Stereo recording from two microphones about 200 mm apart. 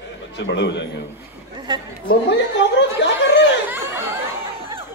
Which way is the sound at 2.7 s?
60° left (ahead or behind).